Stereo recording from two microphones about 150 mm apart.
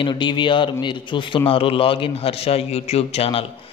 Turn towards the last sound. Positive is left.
turn(degrees=40)  # may be behind; listen again after turning